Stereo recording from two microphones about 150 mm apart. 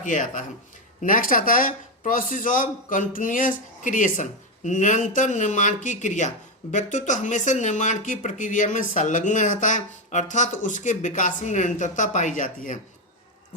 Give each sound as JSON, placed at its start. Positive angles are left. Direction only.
{"t": 0.0, "sound": "a man's voice", "side_deg": 60}